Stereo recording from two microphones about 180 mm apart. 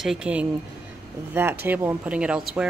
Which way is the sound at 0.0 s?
5° right (ahead or behind).